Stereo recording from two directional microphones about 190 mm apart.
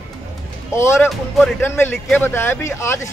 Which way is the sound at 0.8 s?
10° left (ahead or behind).